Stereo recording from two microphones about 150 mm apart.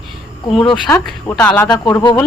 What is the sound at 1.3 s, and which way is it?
Speech, 5° left (ahead or behind).